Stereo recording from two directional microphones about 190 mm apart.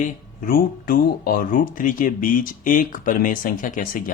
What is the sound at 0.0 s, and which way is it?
Speech, 50° left (ahead or behind).